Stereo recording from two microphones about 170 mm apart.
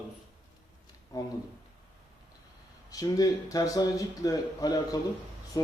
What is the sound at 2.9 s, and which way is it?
A man's voice, 20° left (ahead or behind).